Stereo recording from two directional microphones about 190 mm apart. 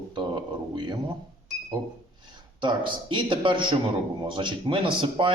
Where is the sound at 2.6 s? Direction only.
25° right (ahead or behind).